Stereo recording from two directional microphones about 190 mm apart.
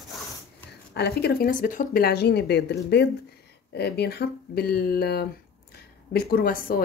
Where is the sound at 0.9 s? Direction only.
60° left (ahead or behind).